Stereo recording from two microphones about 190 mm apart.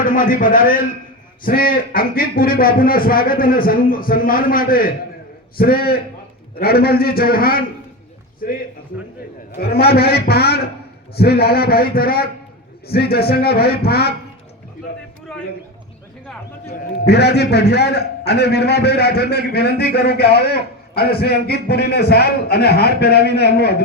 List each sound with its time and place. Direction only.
0.0 s a man's voice: 45° left (ahead or behind)
17.1 s a man's voice: 60° left (ahead or behind)